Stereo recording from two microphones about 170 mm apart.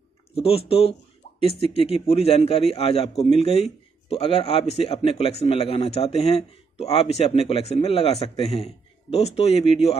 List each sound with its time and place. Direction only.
0.3 s a man's voice: 35° left (ahead or behind)